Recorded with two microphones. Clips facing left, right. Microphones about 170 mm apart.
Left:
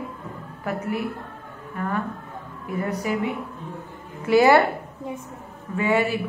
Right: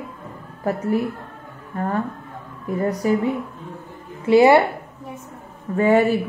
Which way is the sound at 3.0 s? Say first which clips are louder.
Right 8 dB; 40° right (ahead or behind).